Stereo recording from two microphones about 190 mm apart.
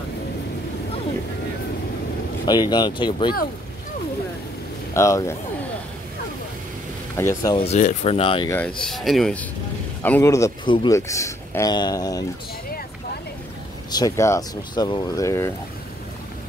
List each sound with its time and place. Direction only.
2.4 s speech: 20° left (ahead or behind)
4.9 s speech: 15° left (ahead or behind)
7.2 s speech: 15° left (ahead or behind)
7.5 s speech: 35° left (ahead or behind)
8.5 s speech: 10° left (ahead or behind)
13.8 s speech: 20° left (ahead or behind)